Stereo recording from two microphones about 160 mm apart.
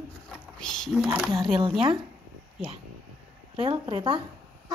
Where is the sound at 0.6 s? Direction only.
5° left (ahead or behind).